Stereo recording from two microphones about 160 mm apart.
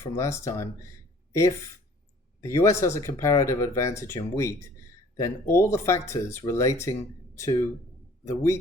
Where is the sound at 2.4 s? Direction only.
15° left (ahead or behind).